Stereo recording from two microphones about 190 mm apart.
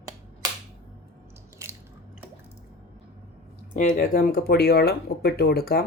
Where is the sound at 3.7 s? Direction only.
45° left (ahead or behind).